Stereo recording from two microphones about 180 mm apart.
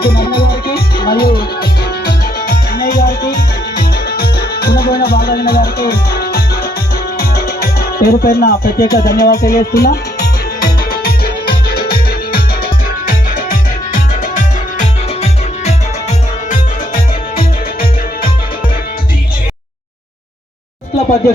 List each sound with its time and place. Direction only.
0.0 s music: 60° left (ahead or behind)
14.8 s music: 40° left (ahead or behind)